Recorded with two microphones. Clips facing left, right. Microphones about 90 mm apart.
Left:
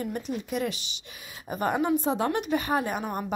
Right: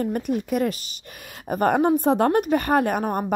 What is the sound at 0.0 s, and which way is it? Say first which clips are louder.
A woman's voice: right 7 dB; 55° right (ahead or behind).